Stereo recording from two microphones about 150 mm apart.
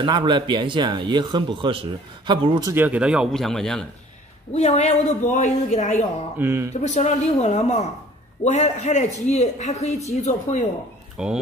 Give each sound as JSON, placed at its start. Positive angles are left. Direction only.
{"t": 0.0, "sound": "speech", "side_deg": -30}
{"t": 2.7, "sound": "speech", "side_deg": -10}
{"t": 4.5, "sound": "speech", "side_deg": 45}
{"t": 6.3, "sound": "speech", "side_deg": -15}
{"t": 6.7, "sound": "speech", "side_deg": 50}
{"t": 11.2, "sound": "speech", "side_deg": -5}